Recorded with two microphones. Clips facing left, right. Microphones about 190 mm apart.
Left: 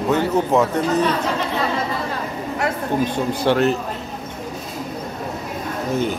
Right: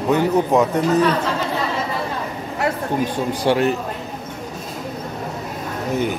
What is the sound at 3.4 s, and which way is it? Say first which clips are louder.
Speech: even; 15° right (ahead or behind).